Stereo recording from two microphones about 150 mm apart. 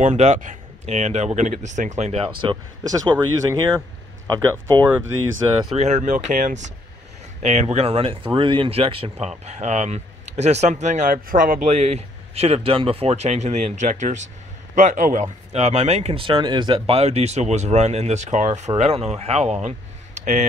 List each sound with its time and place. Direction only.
0.0 s speech: 50° right (ahead or behind)
2.4 s speech: 25° right (ahead or behind)
5.7 s speech: 50° right (ahead or behind); by 11.7 s 70° right (ahead or behind)
11.7 s a man's voice: 45° right (ahead or behind)
15.5 s speech: 45° right (ahead or behind)
20.2 s a sound: 55° right (ahead or behind)